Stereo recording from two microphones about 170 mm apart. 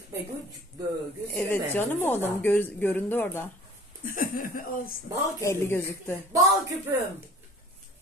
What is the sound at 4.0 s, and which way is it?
Speech, 55° left (ahead or behind).